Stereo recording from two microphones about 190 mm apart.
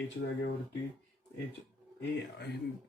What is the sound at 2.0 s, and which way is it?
Speech, 65° left (ahead or behind).